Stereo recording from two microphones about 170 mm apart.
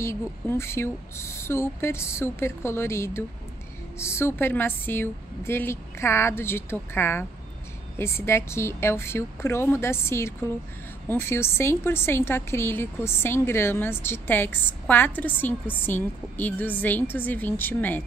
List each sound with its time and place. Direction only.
0.0 s a woman's voice: 15° left (ahead or behind)